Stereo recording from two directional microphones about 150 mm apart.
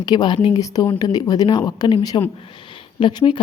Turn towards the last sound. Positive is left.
turn(degrees=35)  # may be behind; listen again after turning